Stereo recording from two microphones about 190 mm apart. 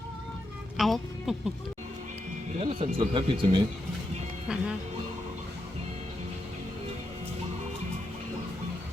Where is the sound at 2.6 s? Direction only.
30° right (ahead or behind).